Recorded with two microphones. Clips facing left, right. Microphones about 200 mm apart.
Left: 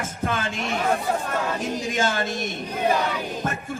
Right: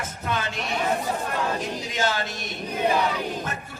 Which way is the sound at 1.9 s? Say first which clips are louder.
Left 1 dB; 50° left (ahead or behind).